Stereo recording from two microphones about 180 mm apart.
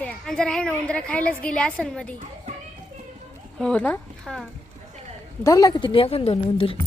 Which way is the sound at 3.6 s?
5° left (ahead or behind).